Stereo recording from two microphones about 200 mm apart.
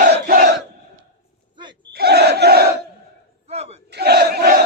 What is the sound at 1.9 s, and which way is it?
Battle cry, 55° right (ahead or behind).